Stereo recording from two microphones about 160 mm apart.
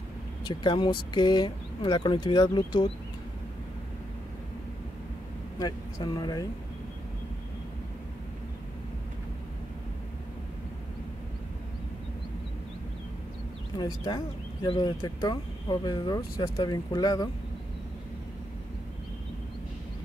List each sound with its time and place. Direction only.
0.5 s speech: 30° left (ahead or behind)
5.6 s speech: 25° left (ahead or behind)
13.7 s speech: 25° left (ahead or behind)